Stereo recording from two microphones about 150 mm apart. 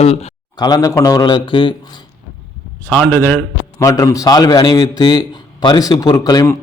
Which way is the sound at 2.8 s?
10° left (ahead or behind).